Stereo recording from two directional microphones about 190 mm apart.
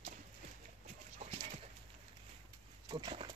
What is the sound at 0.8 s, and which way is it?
Dog, 40° right (ahead or behind).